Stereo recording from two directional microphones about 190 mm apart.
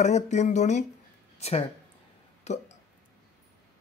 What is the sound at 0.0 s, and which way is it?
Speech, 35° left (ahead or behind).